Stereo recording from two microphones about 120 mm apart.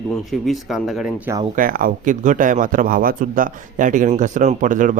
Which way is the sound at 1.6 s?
90° right.